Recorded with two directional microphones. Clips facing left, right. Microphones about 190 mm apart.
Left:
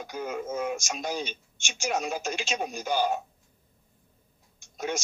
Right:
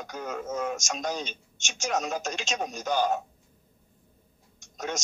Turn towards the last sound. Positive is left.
turn(degrees=10)  # may be behind; listen again after turning